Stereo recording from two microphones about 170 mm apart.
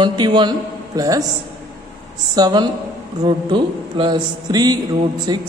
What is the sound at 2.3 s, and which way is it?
A man's voice, 25° right (ahead or behind).